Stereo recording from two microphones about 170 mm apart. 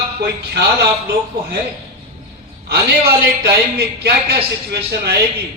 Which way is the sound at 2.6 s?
70° right (ahead or behind).